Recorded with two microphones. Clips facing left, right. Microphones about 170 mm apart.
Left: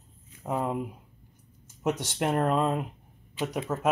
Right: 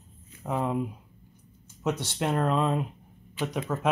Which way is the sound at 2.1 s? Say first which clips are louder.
Left 1 dB; 15° left (ahead or behind).